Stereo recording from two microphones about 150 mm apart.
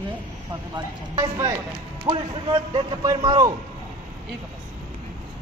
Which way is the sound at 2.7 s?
25° right (ahead or behind).